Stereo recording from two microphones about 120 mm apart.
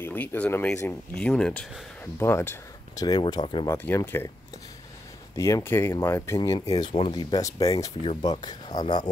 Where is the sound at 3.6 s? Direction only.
20° left (ahead or behind).